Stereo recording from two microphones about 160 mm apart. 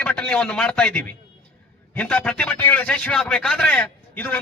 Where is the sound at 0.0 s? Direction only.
10° left (ahead or behind).